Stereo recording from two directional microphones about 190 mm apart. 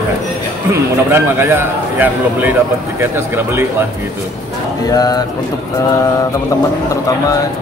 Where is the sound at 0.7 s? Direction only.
10° right (ahead or behind).